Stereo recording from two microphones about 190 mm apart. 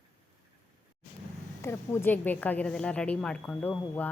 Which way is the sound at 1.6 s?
15° left (ahead or behind).